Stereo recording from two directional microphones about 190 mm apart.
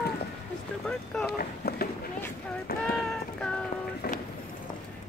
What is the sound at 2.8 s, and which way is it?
Child singing, 5° left (ahead or behind).